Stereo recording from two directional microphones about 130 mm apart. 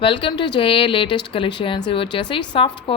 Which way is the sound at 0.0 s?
40° left (ahead or behind).